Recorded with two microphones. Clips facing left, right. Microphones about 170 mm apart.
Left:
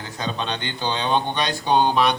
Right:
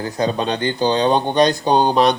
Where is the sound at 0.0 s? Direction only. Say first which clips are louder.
Right 8 dB; 40° right (ahead or behind).